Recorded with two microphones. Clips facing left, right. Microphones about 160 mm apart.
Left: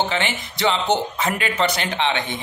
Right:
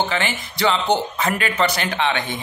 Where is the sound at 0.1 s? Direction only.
20° left (ahead or behind).